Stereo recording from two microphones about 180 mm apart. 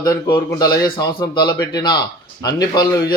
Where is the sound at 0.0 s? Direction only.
20° left (ahead or behind).